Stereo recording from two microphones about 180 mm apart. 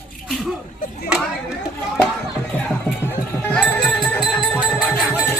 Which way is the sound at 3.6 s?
Centre (ahead or behind).